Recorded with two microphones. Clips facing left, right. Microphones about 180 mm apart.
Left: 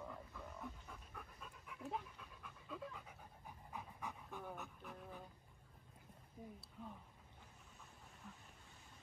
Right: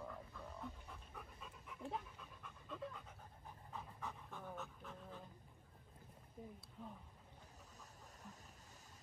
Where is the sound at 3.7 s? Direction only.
15° left (ahead or behind).